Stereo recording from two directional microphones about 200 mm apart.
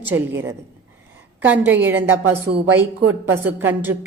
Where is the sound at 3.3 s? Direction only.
10° right (ahead or behind).